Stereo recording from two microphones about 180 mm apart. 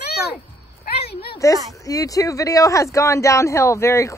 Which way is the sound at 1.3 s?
20° left (ahead or behind).